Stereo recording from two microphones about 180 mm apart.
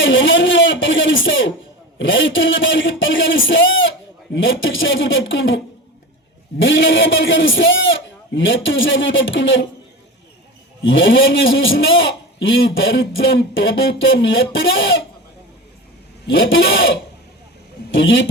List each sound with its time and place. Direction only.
0.0 s a sound: 90° left
2.0 s a man's voice: 90° left
10.8 s a man's voice: 90° left
16.2 s a man's voice: 90° left